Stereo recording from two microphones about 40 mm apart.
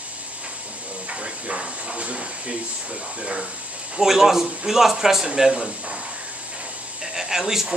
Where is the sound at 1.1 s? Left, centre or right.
Right.